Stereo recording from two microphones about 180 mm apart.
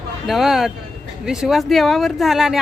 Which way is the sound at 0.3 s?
Centre (ahead or behind).